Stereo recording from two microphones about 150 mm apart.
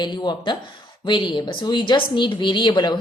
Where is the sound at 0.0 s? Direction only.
30° left (ahead or behind).